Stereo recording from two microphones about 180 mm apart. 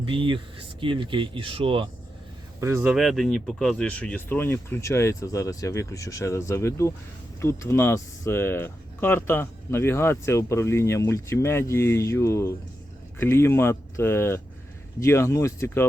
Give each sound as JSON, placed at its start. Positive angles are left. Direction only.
{"t": 0.0, "sound": "speech", "side_deg": -30}
{"t": 2.6, "sound": "speech", "side_deg": -15}
{"t": 2.9, "sound": "speech", "side_deg": 0}